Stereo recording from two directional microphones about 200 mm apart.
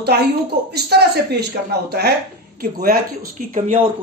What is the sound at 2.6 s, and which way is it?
Speech, 50° right (ahead or behind).